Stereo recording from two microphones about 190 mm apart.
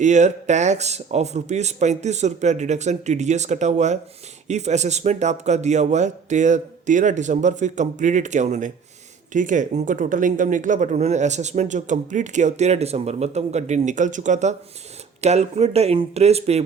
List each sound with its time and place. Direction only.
0.0 s speech: 40° right (ahead or behind)